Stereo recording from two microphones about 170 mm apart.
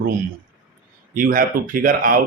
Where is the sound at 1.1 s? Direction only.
55° right (ahead or behind).